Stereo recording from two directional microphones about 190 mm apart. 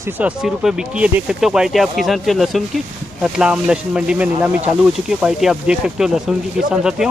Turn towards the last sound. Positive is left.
turn(degrees=-5)  # may be behind; listen again after turning